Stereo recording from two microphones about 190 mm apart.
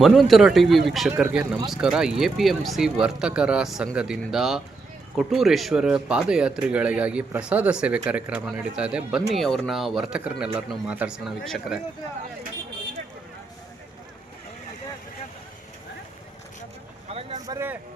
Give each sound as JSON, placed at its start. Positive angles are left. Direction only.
{"t": 0.0, "sound": "a man's voice", "side_deg": 0}
{"t": 17.1, "sound": "boat", "side_deg": -30}
{"t": 17.4, "sound": "vehicle", "side_deg": -15}